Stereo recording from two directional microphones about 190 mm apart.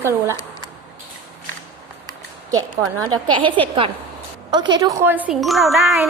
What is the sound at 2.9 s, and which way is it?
A woman's voice, 25° right (ahead or behind).